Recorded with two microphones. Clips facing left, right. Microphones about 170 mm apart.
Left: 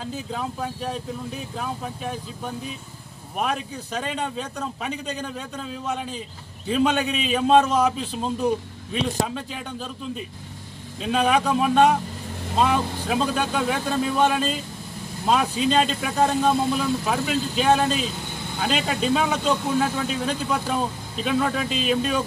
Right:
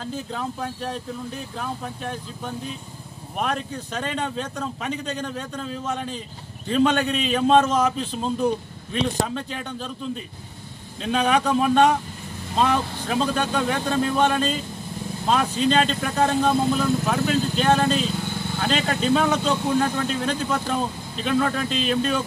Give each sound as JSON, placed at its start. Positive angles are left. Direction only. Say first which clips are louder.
{"t": 0.0, "sound": "speech", "louder": "even", "side_deg": 5}